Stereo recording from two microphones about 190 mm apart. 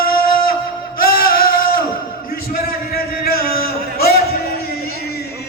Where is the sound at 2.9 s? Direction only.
55° left (ahead or behind).